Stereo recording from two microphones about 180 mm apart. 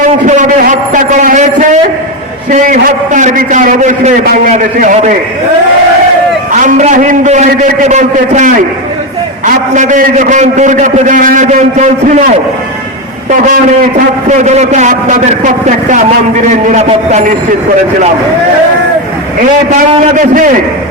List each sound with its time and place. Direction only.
0.3 s a sound: 45° right (ahead or behind)
2.5 s a man's voice: 45° right (ahead or behind)
6.6 s a man's voice: 45° right (ahead or behind)
9.7 s a man's voice: 45° right (ahead or behind)
14.3 s a man's voice: 40° right (ahead or behind)
19.9 s a man's voice: 45° right (ahead or behind)